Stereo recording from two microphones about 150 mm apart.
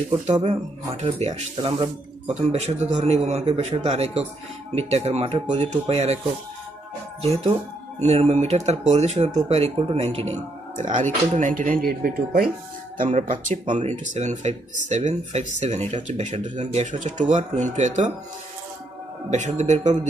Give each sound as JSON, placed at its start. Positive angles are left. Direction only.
{"t": 1.0, "sound": "a man's voice", "side_deg": -45}
{"t": 1.6, "sound": "speech", "side_deg": -35}
{"t": 2.5, "sound": "a man's voice", "side_deg": -45}
{"t": 7.2, "sound": "a man's voice", "side_deg": -45}
{"t": 12.9, "sound": "speech", "side_deg": -65}
{"t": 13.5, "sound": "a man's voice", "side_deg": -55}
{"t": 19.3, "sound": "a man's voice", "side_deg": -50}